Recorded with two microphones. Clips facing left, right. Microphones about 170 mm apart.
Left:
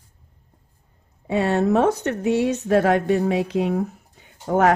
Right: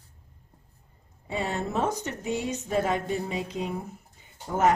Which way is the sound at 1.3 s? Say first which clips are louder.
Left 11 dB; 75° left (ahead or behind).